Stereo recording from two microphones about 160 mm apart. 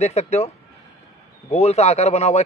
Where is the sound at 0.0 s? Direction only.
45° left (ahead or behind).